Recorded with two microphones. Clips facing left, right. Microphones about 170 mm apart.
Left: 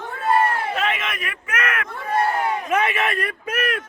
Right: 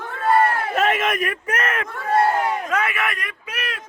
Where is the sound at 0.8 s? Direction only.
45° right (ahead or behind); by 1.9 s 30° right (ahead or behind).